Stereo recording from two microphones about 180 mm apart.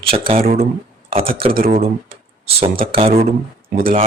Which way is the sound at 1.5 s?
55° right (ahead or behind).